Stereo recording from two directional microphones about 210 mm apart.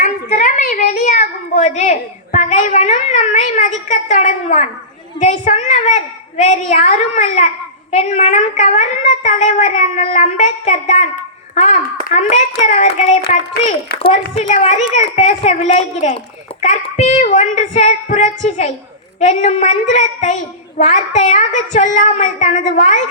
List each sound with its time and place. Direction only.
0.0 s a woman's voice: 35° left (ahead or behind)
14.0 s a woman's voice: 30° left (ahead or behind)